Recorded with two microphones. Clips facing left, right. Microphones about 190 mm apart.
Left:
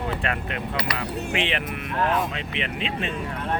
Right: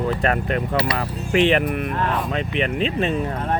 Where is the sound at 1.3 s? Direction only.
45° right (ahead or behind).